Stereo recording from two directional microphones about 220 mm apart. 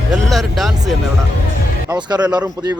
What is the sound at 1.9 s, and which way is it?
Speech, 20° right (ahead or behind).